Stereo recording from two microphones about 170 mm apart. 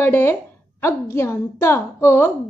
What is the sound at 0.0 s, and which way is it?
A woman's voice, 10° left (ahead or behind).